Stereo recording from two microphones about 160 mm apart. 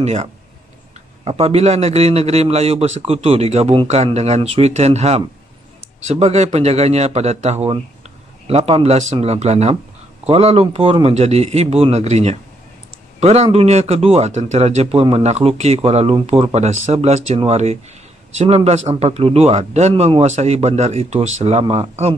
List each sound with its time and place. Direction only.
0.0 s a man's voice: 45° right (ahead or behind)